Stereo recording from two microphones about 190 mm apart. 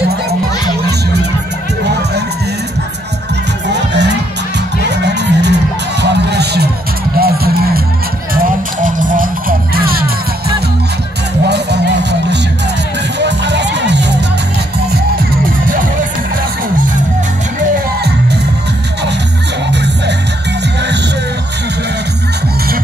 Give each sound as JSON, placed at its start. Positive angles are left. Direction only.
{"t": 3.6, "sound": "music", "side_deg": -65}
{"t": 11.4, "sound": "music", "side_deg": -60}
{"t": 19.7, "sound": "music", "side_deg": -65}